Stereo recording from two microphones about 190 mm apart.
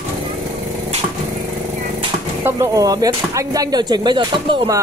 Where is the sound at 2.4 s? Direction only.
15° right (ahead or behind).